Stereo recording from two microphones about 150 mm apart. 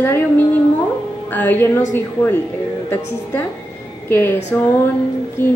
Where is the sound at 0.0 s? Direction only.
15° left (ahead or behind).